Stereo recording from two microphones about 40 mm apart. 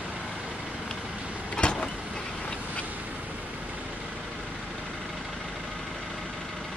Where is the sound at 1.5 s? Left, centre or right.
Left.